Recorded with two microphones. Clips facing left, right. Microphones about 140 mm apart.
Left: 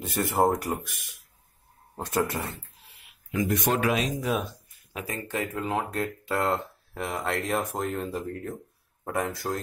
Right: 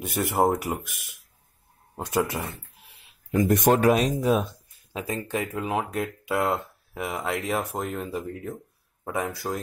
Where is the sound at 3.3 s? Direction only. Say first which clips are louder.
Right 6 dB; 45° right (ahead or behind).